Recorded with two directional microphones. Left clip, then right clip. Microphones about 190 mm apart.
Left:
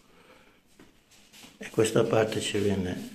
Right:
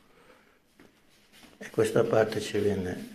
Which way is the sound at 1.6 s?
20° left (ahead or behind).